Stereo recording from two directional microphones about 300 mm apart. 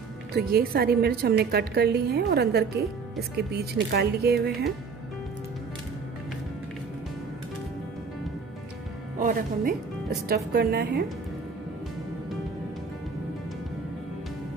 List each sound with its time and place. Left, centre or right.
0.3 s a woman's voice: right
9.2 s a woman's voice: right